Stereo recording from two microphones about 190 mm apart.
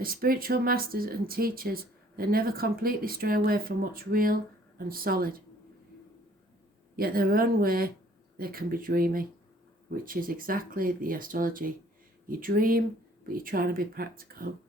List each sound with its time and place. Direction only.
0.0 s speech: 50° right (ahead or behind)
6.9 s speech: 50° right (ahead or behind)